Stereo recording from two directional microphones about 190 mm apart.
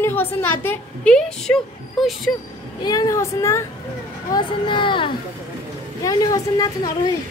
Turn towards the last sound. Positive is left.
turn(degrees=20)  # may be behind; listen again after turning